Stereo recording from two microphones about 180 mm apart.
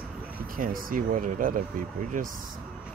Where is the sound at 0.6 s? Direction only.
50° right (ahead or behind).